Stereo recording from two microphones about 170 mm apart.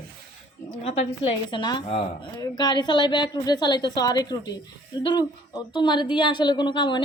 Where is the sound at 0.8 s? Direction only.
35° left (ahead or behind).